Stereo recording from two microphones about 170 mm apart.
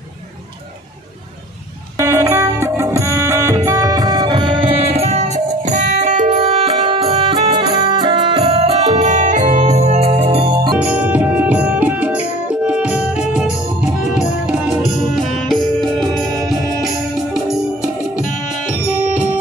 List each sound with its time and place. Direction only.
2.0 s music: 20° right (ahead or behind)
10.8 s music: 10° right (ahead or behind)